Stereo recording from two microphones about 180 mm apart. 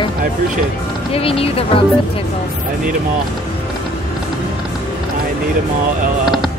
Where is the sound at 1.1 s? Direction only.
30° left (ahead or behind).